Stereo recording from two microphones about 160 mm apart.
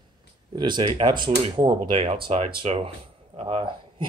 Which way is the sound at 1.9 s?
40° right (ahead or behind).